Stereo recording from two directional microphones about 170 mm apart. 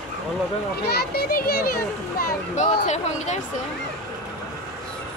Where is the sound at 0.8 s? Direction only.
70° left (ahead or behind); by 3.3 s 45° left (ahead or behind).